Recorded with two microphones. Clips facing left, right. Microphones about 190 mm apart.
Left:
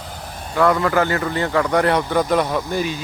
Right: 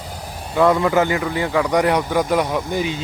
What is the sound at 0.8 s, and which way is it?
Speech, 15° right (ahead or behind).